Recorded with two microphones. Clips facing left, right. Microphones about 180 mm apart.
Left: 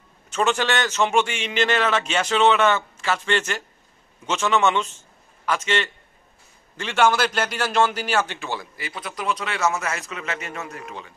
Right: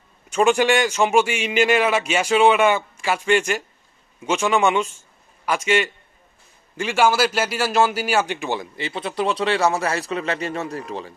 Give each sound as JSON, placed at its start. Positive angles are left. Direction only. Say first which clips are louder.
{"t": 0.3, "sound": "a man's voice", "louder": "right 5 dB", "side_deg": -10}